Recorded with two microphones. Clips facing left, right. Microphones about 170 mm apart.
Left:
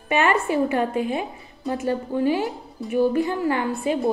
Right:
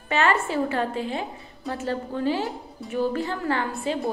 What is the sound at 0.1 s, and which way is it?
A woman's voice, 15° left (ahead or behind).